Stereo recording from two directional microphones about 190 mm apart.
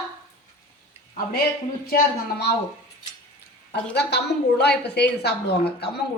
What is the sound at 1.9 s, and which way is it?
Speech, 50° left (ahead or behind).